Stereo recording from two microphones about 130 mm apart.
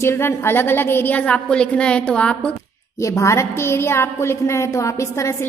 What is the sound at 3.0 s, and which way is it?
A woman's voice, 25° left (ahead or behind).